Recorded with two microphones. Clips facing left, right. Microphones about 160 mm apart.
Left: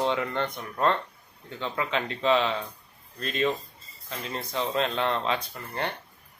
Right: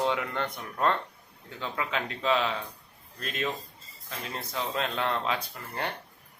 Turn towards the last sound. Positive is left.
turn(degrees=-5)  # may be behind; listen again after turning